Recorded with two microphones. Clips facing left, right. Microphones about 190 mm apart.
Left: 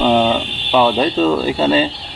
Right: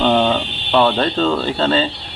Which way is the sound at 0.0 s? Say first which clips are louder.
Left 1 dB; 5° left (ahead or behind).